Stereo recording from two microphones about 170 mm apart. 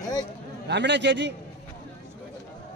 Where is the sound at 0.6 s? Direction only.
90° right.